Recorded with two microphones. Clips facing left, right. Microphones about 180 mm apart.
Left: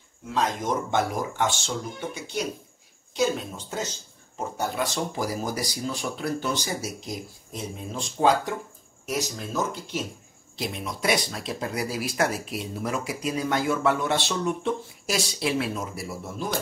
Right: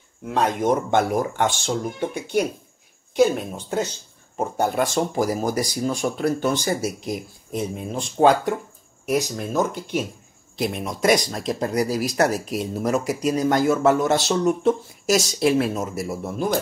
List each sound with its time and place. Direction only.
0.3 s speech: 60° right (ahead or behind)